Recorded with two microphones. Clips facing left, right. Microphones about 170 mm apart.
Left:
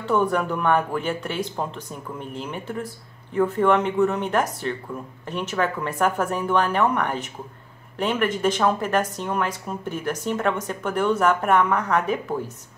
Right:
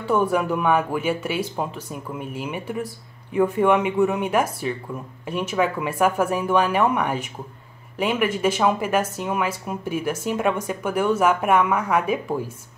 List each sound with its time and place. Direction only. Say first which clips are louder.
0.0 s speech: right 1 dB; 10° right (ahead or behind)